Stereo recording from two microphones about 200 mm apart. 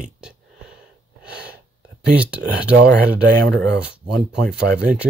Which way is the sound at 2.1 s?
5° right (ahead or behind).